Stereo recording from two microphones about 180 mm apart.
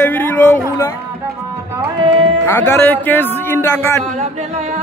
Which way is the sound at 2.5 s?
10° left (ahead or behind).